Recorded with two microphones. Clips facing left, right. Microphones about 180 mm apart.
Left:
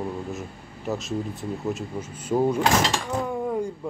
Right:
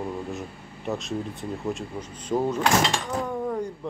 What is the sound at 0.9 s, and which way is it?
Speech, centre (ahead or behind).